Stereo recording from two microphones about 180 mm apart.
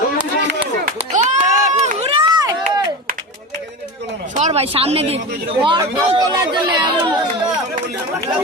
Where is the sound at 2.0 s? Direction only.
30° right (ahead or behind).